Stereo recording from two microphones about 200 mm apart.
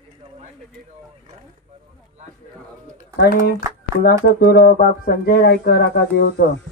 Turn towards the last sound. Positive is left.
turn(degrees=55)  # may be behind; listen again after turning